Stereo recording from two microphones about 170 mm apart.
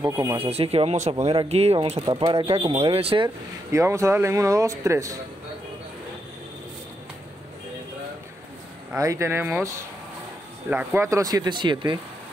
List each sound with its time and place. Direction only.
0.0 s speech: 20° right (ahead or behind)
0.4 s speech: 35° right (ahead or behind)
3.7 s speech: 15° right (ahead or behind)
8.9 s speech: 20° right (ahead or behind)